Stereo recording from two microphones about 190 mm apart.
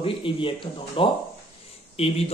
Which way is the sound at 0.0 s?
25° left (ahead or behind).